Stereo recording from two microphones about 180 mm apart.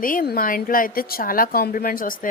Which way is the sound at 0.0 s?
50° left (ahead or behind).